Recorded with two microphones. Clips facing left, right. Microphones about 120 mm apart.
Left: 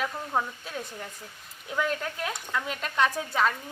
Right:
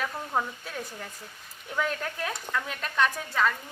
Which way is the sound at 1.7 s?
5° left (ahead or behind).